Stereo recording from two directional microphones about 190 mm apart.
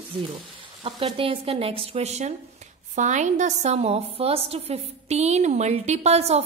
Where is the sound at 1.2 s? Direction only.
30° right (ahead or behind).